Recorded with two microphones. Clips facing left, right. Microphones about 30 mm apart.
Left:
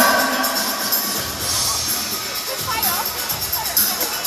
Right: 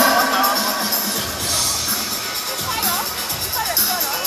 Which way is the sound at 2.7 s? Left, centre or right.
Centre.